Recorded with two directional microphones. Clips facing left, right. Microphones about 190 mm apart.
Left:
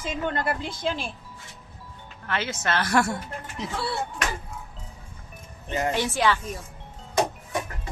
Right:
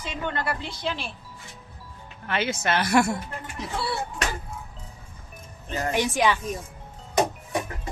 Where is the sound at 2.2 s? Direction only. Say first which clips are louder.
Right 2 dB; 15° right (ahead or behind).